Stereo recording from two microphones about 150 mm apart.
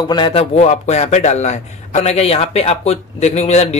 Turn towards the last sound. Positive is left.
turn(degrees=45)  # may be behind; listen again after turning